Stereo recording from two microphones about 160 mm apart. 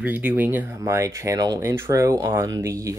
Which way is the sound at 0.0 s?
10° right (ahead or behind).